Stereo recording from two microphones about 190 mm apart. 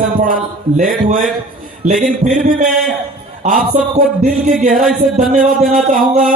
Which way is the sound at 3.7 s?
40° right (ahead or behind).